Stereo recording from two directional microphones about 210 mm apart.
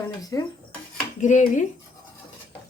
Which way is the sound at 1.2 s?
35° left (ahead or behind).